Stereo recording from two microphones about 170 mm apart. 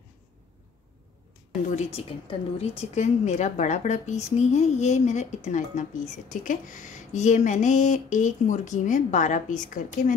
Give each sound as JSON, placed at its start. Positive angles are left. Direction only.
{"t": 1.8, "sound": "a woman's voice", "side_deg": 35}